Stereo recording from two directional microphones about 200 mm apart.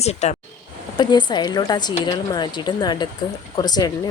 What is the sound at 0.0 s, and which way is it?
Speech, 35° left (ahead or behind).